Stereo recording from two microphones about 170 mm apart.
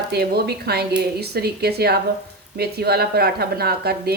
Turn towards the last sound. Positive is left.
turn(degrees=-70)  # may be behind; listen again after turning